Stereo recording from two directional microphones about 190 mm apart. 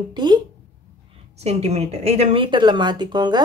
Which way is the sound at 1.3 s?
35° right (ahead or behind).